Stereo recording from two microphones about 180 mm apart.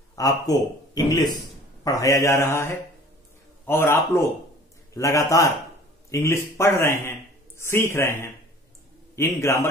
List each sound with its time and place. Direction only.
0.1 s a man's voice: 20° left (ahead or behind)